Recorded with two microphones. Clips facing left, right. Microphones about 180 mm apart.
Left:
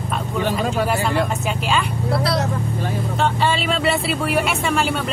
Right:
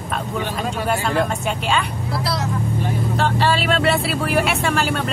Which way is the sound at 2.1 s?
60° left (ahead or behind).